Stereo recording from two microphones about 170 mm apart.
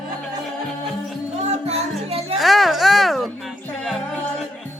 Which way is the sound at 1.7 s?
35° right (ahead or behind).